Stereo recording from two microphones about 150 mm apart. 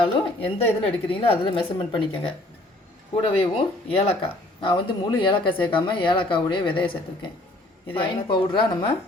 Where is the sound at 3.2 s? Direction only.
40° left (ahead or behind).